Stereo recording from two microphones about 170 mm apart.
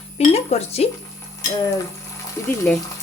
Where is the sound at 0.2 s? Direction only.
40° left (ahead or behind).